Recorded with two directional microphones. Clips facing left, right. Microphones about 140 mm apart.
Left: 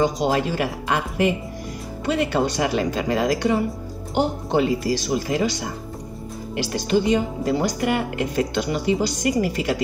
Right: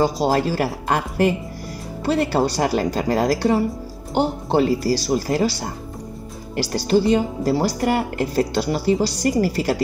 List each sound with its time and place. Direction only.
0.0 s speech: 35° right (ahead or behind)